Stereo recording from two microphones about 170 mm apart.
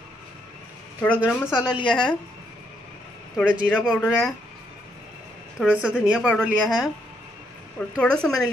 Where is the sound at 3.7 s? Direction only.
5° left (ahead or behind).